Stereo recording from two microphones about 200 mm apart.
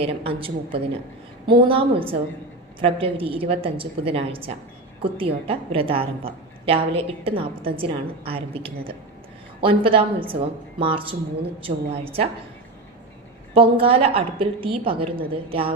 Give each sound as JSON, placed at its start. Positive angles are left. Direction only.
{"t": 0.0, "sound": "a woman's voice", "side_deg": -30}
{"t": 13.5, "sound": "a woman's voice", "side_deg": -25}